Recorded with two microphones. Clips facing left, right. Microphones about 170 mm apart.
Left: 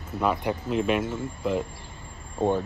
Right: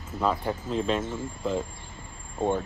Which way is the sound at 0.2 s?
15° left (ahead or behind).